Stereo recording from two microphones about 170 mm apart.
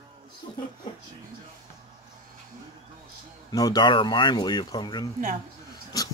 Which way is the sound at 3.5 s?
20° left (ahead or behind).